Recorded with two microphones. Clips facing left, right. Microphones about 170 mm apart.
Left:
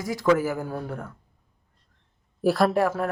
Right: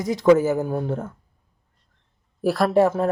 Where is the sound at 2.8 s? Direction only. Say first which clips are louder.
Right 5 dB; 25° right (ahead or behind).